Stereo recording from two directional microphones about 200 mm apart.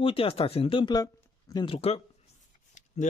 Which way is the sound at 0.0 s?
30° left (ahead or behind).